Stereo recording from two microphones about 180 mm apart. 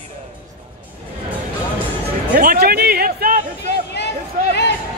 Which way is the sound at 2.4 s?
55° right (ahead or behind).